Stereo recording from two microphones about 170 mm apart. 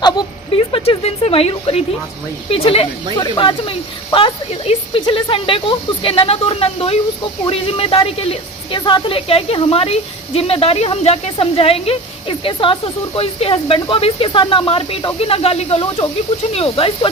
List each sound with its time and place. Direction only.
0.0 s a woman's voice: 30° left (ahead or behind)